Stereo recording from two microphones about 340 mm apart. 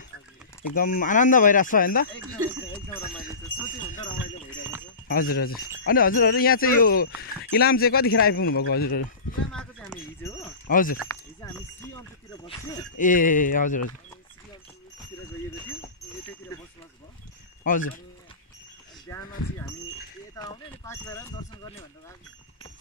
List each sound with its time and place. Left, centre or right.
0.7 s speech: left
3.6 s speech: left
9.5 s sheep: centre
10.2 s wind chime: centre
10.7 s speech: left
11.1 s a sound: centre
12.4 s speech: centre
12.9 s speech: left
17.6 s speech: left
19.0 s a sound: centre
20.3 s clip-clop: centre